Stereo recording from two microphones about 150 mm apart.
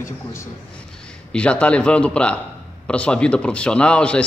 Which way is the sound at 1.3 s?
10° left (ahead or behind).